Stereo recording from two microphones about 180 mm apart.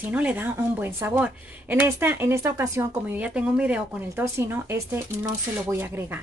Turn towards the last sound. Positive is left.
turn(degrees=-10)  # may be behind; listen again after turning